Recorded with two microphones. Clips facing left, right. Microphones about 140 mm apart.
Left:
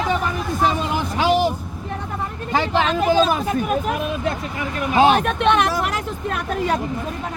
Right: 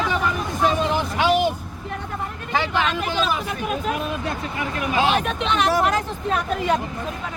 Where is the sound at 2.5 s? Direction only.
35° left (ahead or behind).